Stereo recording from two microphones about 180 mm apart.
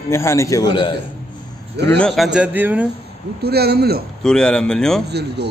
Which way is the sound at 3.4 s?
60° right (ahead or behind).